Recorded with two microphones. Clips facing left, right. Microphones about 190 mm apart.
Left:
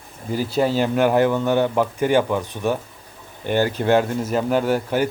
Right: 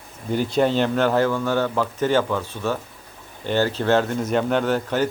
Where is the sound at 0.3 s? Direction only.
5° left (ahead or behind).